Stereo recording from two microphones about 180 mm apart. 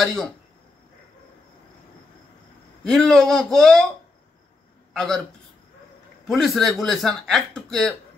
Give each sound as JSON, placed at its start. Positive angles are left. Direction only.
{"t": 0.0, "sound": "speech", "side_deg": 0}
{"t": 2.9, "sound": "speech", "side_deg": 0}
{"t": 4.9, "sound": "a man's voice", "side_deg": 5}
{"t": 6.2, "sound": "speech", "side_deg": 0}